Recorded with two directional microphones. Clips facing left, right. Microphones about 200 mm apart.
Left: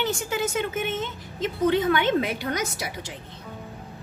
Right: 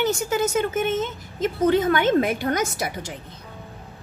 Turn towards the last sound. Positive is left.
turn(degrees=-50)  # may be behind; listen again after turning